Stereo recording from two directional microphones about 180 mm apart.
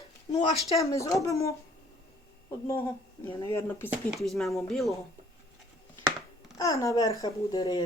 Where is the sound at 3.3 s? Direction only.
25° left (ahead or behind).